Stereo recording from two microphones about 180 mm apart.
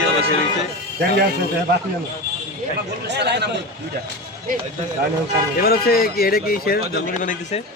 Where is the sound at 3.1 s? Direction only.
70° right (ahead or behind).